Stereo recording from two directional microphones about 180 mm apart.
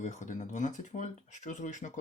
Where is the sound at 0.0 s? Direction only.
40° left (ahead or behind).